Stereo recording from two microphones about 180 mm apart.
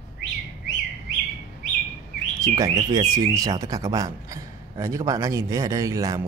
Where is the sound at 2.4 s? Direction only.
20° right (ahead or behind).